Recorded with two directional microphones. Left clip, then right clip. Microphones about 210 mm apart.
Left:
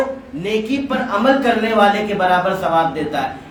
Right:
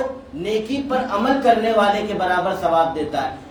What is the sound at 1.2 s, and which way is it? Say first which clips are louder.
Speech: left 1 dB; 20° left (ahead or behind).